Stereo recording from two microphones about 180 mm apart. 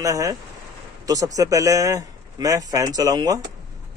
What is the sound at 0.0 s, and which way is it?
Speech, 20° right (ahead or behind).